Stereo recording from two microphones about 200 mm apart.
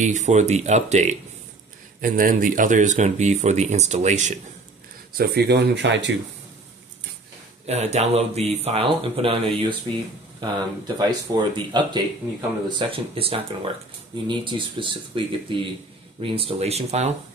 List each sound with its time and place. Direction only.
0.0 s speech: 35° right (ahead or behind)
5.1 s speech: 50° right (ahead or behind)
7.6 s speech: 35° right (ahead or behind)
11.0 s speech: 20° right (ahead or behind)